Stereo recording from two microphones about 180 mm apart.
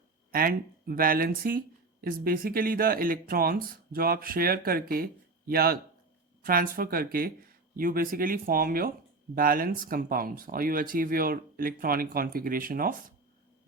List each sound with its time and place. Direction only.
0.3 s speech: 55° right (ahead or behind)